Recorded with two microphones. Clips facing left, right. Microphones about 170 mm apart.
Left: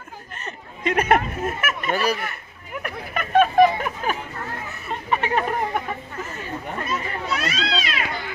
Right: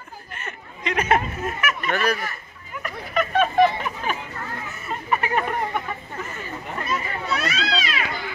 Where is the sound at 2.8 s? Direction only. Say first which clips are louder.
Right 5 dB; 50° left (ahead or behind).